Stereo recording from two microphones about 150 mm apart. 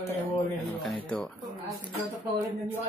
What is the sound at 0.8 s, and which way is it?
Speech, centre (ahead or behind).